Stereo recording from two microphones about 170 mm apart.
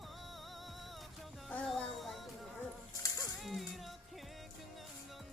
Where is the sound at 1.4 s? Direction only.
5° left (ahead or behind).